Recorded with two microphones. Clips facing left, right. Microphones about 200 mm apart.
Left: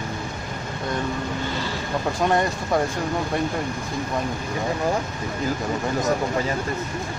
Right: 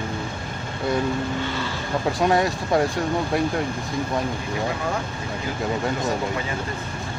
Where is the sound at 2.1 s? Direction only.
Centre (ahead or behind).